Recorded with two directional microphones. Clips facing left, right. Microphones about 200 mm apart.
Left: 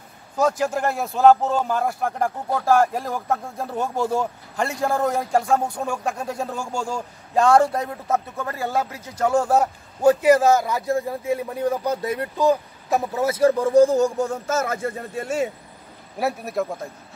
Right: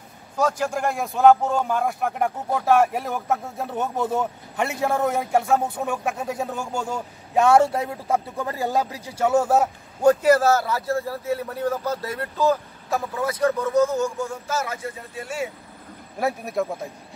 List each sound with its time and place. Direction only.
0.4 s a man's voice: 10° left (ahead or behind)
10.2 s a man's voice: 10° left (ahead or behind); by 15.4 s 45° left (ahead or behind)
16.2 s a man's voice: 5° left (ahead or behind)